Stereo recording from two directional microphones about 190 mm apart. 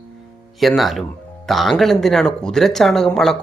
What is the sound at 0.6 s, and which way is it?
Speech, centre (ahead or behind).